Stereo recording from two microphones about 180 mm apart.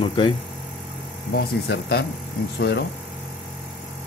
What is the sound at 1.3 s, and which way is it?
Speech, 60° left (ahead or behind).